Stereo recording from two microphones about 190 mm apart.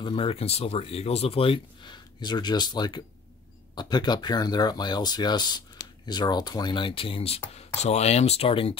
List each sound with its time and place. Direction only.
0.0 s speech: 30° left (ahead or behind)